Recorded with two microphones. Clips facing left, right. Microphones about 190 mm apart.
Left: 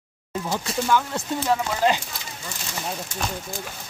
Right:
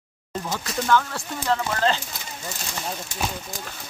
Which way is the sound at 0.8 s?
10° left (ahead or behind).